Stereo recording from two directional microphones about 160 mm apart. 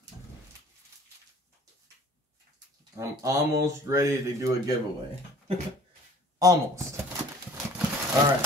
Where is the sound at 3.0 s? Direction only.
20° right (ahead or behind).